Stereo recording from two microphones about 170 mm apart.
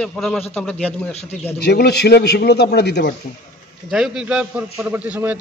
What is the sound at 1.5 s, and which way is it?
A man's voice, 70° left (ahead or behind).